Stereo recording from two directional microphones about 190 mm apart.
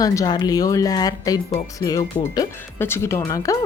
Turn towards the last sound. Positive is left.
turn(degrees=20)  # may be behind; listen again after turning